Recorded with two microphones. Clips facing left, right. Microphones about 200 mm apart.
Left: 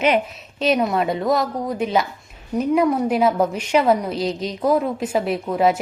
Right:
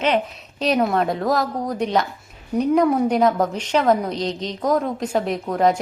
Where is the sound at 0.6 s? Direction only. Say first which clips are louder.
Even; centre (ahead or behind).